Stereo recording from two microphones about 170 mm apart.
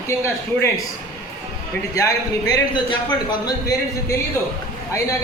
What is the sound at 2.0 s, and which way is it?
A man's voice, 20° left (ahead or behind).